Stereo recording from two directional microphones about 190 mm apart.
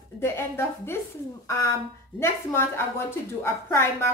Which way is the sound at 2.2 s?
15° left (ahead or behind).